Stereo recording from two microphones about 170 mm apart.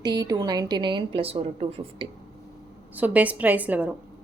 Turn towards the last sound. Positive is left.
turn(degrees=-10)  # may be behind; listen again after turning